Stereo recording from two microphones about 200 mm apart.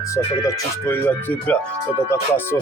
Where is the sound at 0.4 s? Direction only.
10° left (ahead or behind).